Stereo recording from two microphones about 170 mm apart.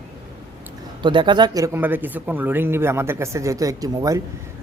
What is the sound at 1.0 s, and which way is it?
Speech, 30° right (ahead or behind).